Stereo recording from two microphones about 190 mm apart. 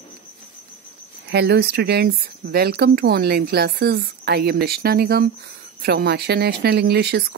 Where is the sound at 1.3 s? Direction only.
60° right (ahead or behind).